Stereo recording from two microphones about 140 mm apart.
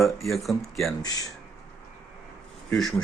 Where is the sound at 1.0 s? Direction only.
25° left (ahead or behind).